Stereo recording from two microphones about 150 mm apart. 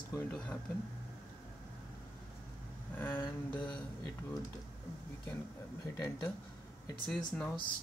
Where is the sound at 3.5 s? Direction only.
30° left (ahead or behind).